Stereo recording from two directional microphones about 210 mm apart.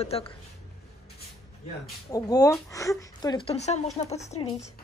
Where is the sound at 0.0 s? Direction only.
30° left (ahead or behind).